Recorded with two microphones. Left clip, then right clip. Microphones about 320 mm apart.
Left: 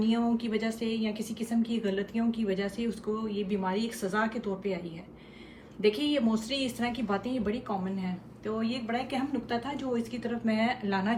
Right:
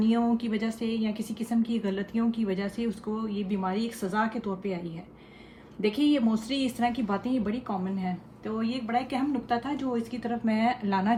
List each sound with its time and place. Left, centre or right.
0.0 s a woman's voice: right
5.8 s a woman's voice: right